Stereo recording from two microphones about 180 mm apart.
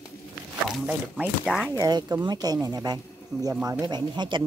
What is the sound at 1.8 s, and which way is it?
Speech, 20° right (ahead or behind).